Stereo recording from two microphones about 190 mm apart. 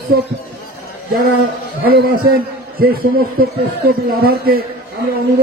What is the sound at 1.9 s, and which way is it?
Speech, 55° right (ahead or behind).